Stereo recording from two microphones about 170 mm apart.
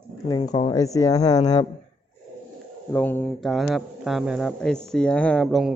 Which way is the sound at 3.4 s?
Centre (ahead or behind).